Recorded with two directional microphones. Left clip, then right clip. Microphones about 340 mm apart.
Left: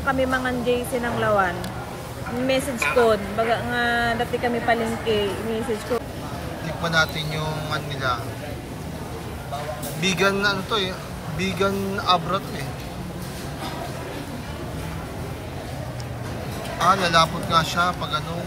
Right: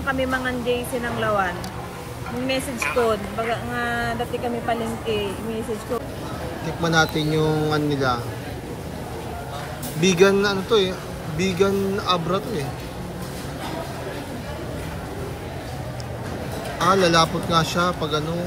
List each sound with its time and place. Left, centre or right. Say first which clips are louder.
0.0 s speech: left 1 dB; left
6.8 s speech: right 2 dB; centre
9.9 s speech: right 5 dB; centre
16.7 s speech: even; centre